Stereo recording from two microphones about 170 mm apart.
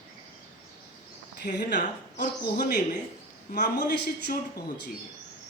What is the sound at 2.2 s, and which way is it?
Speech, 55° left (ahead or behind).